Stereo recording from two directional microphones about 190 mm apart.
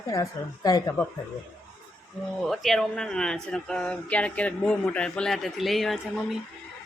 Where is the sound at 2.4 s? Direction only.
Centre (ahead or behind).